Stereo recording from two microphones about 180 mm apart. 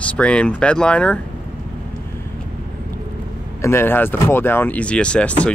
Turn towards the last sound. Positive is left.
turn(degrees=5)  # may be behind; listen again after turning